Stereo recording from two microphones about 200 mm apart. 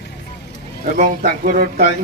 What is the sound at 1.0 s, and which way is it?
Speech, 45° right (ahead or behind).